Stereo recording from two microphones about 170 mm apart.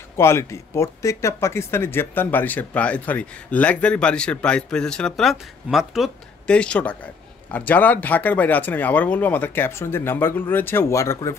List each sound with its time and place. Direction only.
0.2 s speech: 15° left (ahead or behind)